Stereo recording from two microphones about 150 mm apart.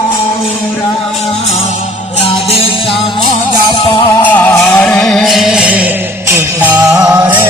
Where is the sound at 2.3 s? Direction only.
35° left (ahead or behind).